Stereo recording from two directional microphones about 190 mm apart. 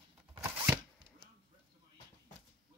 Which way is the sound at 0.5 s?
15° right (ahead or behind).